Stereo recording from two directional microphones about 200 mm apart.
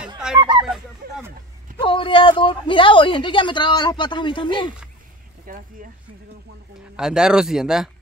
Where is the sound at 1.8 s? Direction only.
25° left (ahead or behind).